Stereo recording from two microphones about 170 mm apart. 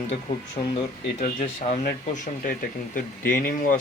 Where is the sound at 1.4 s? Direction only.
45° left (ahead or behind).